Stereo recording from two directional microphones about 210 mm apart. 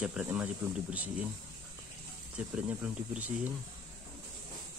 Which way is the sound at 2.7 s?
5° right (ahead or behind).